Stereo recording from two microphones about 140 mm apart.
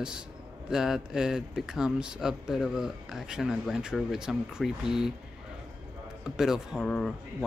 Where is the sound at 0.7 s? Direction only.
5° right (ahead or behind).